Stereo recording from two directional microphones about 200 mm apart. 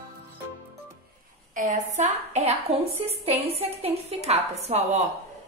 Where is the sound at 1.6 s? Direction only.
40° right (ahead or behind).